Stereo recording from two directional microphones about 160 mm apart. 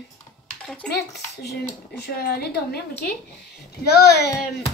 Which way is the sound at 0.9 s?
90° left.